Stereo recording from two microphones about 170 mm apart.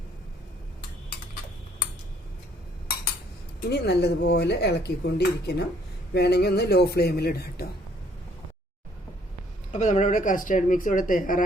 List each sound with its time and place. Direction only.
3.7 s speech: 75° left (ahead or behind)
6.1 s speech: 75° left (ahead or behind)
9.7 s speech: 45° left (ahead or behind)